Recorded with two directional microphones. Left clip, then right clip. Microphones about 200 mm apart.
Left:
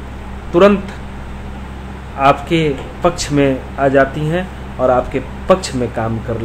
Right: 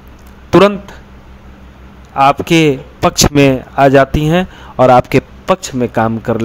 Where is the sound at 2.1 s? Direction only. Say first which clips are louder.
Right 3 dB; 55° right (ahead or behind).